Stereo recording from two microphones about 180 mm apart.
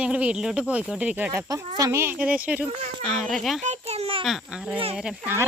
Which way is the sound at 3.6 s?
40° right (ahead or behind).